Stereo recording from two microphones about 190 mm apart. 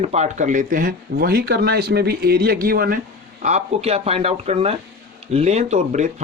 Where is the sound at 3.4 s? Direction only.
35° right (ahead or behind).